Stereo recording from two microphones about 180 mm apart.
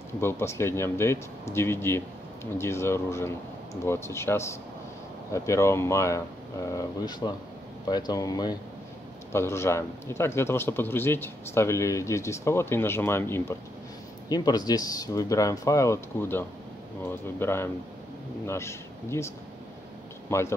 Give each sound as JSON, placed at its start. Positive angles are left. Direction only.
{"t": 0.2, "sound": "a man's voice", "side_deg": 15}